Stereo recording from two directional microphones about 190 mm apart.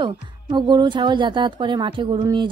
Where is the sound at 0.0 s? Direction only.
25° right (ahead or behind).